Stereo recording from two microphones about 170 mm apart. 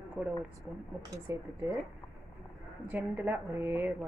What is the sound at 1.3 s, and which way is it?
Speech, 20° right (ahead or behind).